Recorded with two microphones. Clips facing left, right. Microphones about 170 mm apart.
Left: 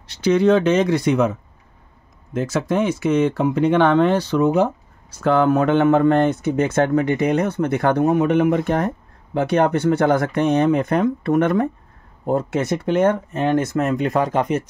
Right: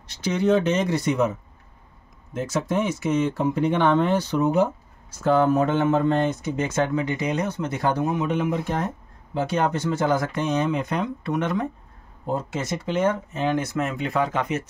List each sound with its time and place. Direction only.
0.2 s speech: 85° left
2.3 s speech: 80° left; by 14.5 s 40° left (ahead or behind)